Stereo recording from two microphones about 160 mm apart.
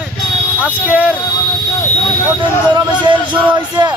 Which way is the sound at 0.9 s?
10° right (ahead or behind).